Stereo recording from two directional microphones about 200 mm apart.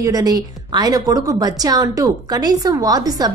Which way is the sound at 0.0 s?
20° right (ahead or behind).